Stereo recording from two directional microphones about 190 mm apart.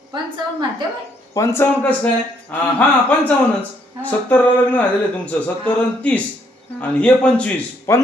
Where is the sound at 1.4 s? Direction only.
15° left (ahead or behind).